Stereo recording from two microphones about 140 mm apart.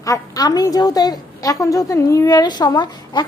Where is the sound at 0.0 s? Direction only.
25° left (ahead or behind).